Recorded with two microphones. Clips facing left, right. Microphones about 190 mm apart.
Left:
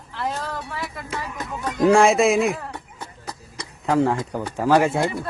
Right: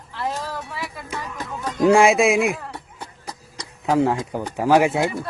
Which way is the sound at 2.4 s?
15° right (ahead or behind).